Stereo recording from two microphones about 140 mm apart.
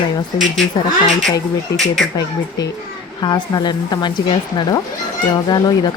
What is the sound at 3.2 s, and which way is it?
Speech, 30° left (ahead or behind).